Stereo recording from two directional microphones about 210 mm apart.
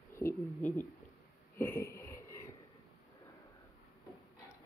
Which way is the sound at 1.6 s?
10° left (ahead or behind).